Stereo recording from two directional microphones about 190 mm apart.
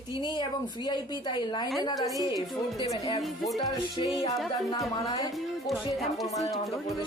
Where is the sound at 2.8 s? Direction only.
30° left (ahead or behind).